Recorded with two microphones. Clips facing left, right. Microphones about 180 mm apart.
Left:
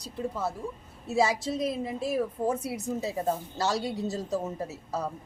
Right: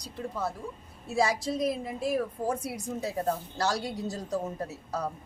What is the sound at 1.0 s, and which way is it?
Speech, 25° left (ahead or behind).